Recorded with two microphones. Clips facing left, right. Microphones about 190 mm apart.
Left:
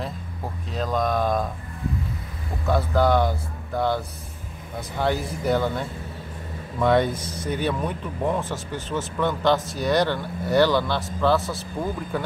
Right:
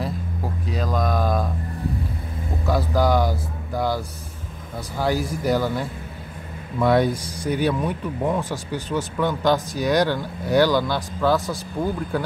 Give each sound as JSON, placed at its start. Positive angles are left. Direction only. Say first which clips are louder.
{"t": 0.7, "sound": "a sound", "louder": "left 1 dB", "side_deg": -5}
{"t": 2.6, "sound": "speech", "louder": "even", "side_deg": -5}
{"t": 8.9, "sound": "speech", "louder": "right 1 dB", "side_deg": -15}